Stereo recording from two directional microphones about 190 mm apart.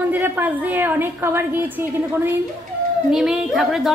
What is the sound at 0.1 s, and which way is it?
A woman's voice, 10° right (ahead or behind).